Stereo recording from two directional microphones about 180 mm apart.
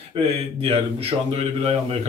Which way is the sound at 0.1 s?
30° right (ahead or behind).